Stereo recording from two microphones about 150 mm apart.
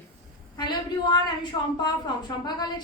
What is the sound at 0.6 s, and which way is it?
A woman's voice, 30° left (ahead or behind).